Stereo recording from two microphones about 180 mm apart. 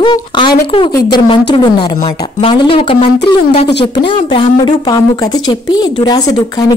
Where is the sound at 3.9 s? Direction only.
30° left (ahead or behind).